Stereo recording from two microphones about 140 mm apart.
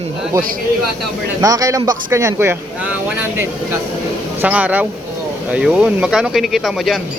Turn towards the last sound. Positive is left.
turn(degrees=0)  # may be behind; listen again after turning